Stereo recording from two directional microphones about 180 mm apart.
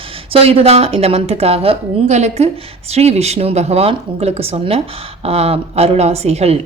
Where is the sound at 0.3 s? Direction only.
35° right (ahead or behind).